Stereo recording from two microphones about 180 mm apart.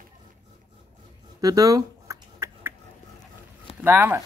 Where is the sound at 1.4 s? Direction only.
20° right (ahead or behind).